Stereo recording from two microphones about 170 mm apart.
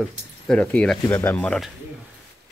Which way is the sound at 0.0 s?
5° left (ahead or behind).